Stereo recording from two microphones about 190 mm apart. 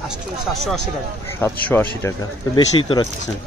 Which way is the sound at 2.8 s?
25° left (ahead or behind).